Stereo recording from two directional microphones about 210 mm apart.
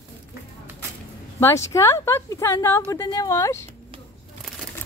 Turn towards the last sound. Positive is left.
turn(degrees=15)  # may be behind; listen again after turning